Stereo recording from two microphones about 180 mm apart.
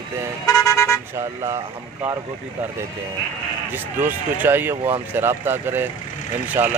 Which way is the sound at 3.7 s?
10° right (ahead or behind).